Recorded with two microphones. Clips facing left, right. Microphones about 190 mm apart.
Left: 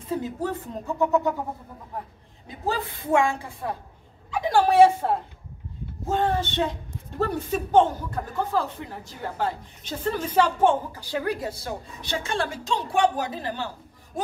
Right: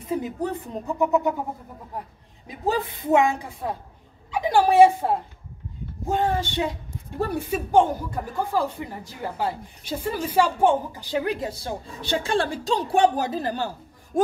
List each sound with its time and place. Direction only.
0.1 s a woman's voice: 15° right (ahead or behind)
2.4 s a woman's voice: 15° right (ahead or behind); by 13.7 s 40° right (ahead or behind)